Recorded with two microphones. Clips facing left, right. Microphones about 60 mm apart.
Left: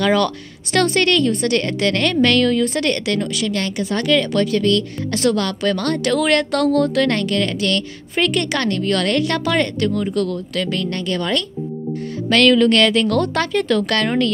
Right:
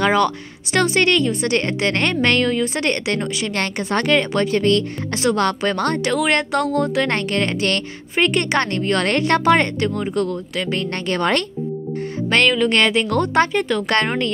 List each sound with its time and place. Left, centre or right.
0.0 s speech: centre
3.5 s speech: right
11.1 s speech: right
12.3 s speech: right